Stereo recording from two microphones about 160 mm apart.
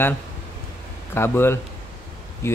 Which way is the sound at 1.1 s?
15° left (ahead or behind).